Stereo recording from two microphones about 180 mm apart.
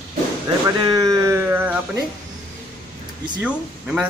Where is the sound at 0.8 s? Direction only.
20° right (ahead or behind).